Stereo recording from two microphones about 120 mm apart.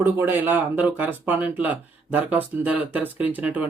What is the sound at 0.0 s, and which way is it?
Speech, 15° right (ahead or behind).